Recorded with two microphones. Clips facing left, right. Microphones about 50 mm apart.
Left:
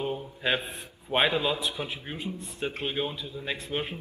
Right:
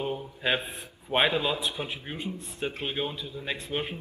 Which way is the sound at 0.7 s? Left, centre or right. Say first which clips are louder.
Even; centre.